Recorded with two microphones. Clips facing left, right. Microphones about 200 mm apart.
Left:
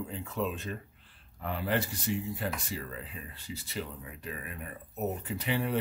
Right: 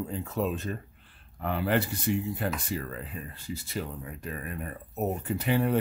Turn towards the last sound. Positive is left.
turn(degrees=-50)  # may be behind; listen again after turning